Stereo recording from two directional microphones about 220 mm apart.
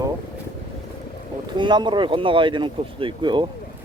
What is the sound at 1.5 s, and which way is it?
Speech, 20° right (ahead or behind).